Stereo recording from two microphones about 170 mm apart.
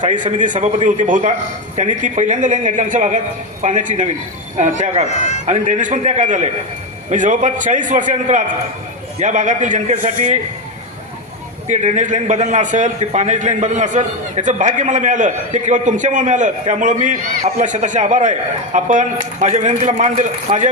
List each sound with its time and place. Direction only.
0.0 s a man's voice: 50° right (ahead or behind)
5.0 s speech: 45° left (ahead or behind)
5.5 s a man's voice: 45° right (ahead or behind)
11.7 s a man's voice: 45° right (ahead or behind)